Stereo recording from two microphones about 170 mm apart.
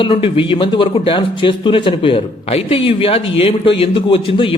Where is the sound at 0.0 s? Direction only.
30° left (ahead or behind).